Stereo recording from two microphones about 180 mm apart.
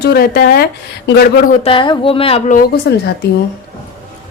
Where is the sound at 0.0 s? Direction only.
60° left (ahead or behind).